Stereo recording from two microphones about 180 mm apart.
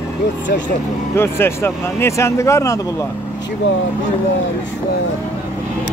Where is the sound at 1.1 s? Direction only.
15° left (ahead or behind).